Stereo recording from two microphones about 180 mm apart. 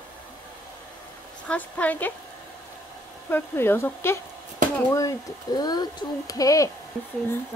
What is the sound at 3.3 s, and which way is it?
Speech, 10° left (ahead or behind).